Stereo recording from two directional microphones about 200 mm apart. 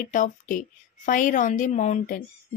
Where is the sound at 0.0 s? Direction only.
40° left (ahead or behind).